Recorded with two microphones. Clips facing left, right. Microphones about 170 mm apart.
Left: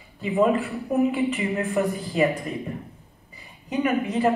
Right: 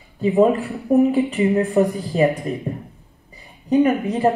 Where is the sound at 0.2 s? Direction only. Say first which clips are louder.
Right 5 dB; 35° right (ahead or behind).